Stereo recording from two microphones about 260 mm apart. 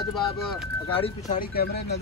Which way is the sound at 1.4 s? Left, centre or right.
Left.